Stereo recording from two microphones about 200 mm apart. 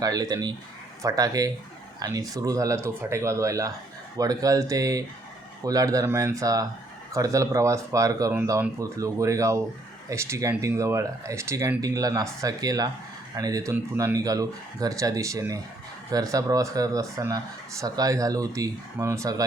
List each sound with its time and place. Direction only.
0.0 s speech: 20° right (ahead or behind)